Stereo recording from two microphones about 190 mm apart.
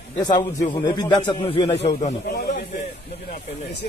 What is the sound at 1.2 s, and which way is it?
Speech, 25° left (ahead or behind).